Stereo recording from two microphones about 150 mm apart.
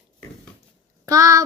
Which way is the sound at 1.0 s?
20° right (ahead or behind).